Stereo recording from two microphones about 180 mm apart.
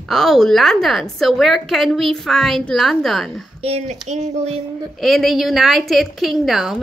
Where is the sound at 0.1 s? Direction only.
Centre (ahead or behind).